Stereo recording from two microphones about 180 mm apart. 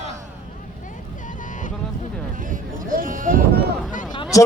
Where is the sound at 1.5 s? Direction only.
45° left (ahead or behind).